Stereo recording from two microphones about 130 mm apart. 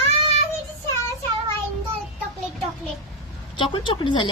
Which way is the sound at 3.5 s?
40° left (ahead or behind).